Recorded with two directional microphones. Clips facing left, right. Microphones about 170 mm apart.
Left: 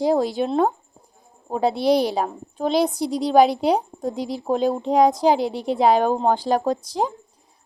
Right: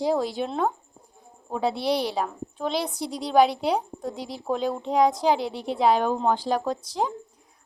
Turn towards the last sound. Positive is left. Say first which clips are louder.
# left 4 dB
turn(degrees=40)  # may be behind; listen again after turning